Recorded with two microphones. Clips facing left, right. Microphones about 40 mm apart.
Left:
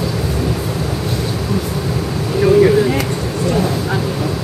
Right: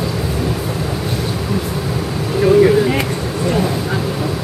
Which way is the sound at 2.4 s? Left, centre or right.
Centre.